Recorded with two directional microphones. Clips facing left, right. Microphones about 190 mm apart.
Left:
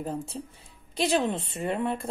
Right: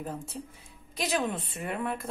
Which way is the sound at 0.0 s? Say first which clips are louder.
Left 4 dB; 30° left (ahead or behind).